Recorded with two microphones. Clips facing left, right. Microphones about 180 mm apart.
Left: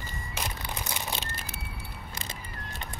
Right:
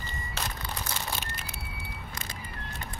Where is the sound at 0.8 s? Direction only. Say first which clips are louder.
Left 1 dB; 20° left (ahead or behind).